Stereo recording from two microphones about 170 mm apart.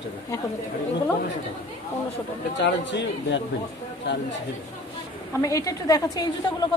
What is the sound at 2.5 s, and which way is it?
Speech, 90° left.